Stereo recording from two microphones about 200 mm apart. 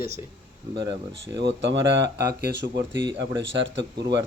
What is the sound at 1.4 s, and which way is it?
Speech, 60° right (ahead or behind).